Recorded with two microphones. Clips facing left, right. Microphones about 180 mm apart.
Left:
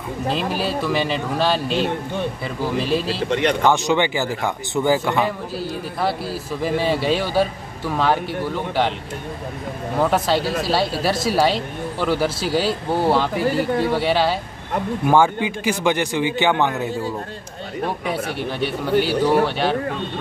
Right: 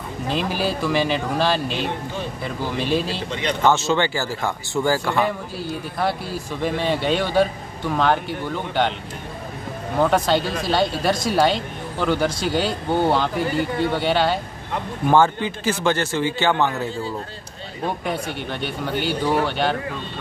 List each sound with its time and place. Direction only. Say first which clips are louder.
0.3 s speech: even; centre (ahead or behind)
3.3 s a man's voice: left 6 dB; 65° left (ahead or behind)
3.6 s speech: right 3 dB; 15° left (ahead or behind)
5.1 s speech: left 1 dB; centre (ahead or behind)
9.9 s speech: right 1 dB; centre (ahead or behind)
15.0 s speech: even; 10° left (ahead or behind)
18.1 s speech: left 2 dB; centre (ahead or behind)